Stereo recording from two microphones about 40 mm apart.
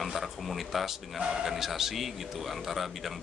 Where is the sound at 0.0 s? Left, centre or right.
Centre.